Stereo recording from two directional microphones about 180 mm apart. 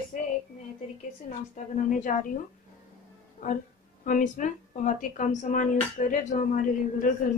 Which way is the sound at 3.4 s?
45° left (ahead or behind).